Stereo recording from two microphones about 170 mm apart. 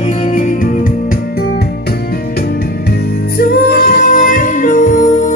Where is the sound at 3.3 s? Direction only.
60° left (ahead or behind).